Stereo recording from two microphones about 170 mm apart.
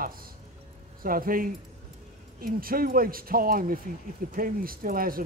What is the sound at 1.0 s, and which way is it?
Speech, 55° right (ahead or behind).